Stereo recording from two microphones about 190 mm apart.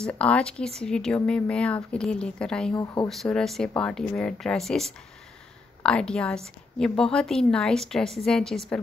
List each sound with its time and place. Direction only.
0.0 s a woman's voice: 5° left (ahead or behind)
2.7 s speech: 20° left (ahead or behind)
3.1 s a woman's voice: centre (ahead or behind)